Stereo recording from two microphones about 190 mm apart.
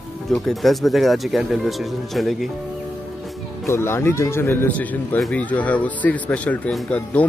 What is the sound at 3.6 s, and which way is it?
Speech, 15° left (ahead or behind).